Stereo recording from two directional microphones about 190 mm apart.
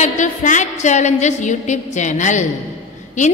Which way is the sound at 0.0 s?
40° left (ahead or behind).